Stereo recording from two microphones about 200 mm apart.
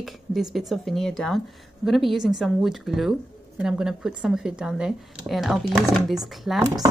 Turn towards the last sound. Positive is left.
turn(degrees=-20)  # may be behind; listen again after turning